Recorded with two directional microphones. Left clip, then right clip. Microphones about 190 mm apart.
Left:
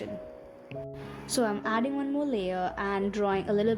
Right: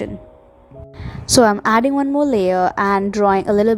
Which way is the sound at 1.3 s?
55° right (ahead or behind).